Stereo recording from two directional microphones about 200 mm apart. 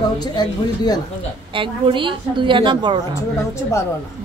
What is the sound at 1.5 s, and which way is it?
A woman's voice, 25° right (ahead or behind).